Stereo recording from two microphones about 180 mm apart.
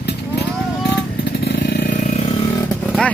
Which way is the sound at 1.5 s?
60° left (ahead or behind).